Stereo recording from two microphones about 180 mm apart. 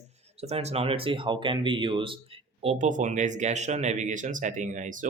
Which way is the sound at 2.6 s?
40° right (ahead or behind).